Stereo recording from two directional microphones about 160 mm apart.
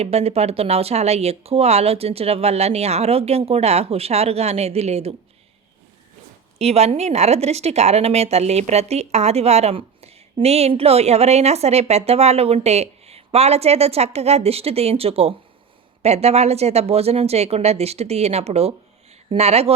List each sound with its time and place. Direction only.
0.0 s speech: 40° right (ahead or behind)
6.6 s speech: 40° right (ahead or behind)